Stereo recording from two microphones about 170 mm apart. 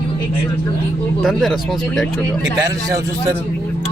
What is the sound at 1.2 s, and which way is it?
Speech, centre (ahead or behind).